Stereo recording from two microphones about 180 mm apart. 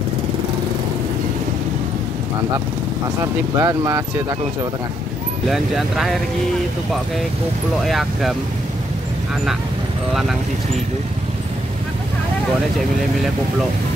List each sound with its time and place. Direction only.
3.5 s speech: 15° right (ahead or behind)
5.5 s speech: centre (ahead or behind)
7.8 s speech: centre (ahead or behind)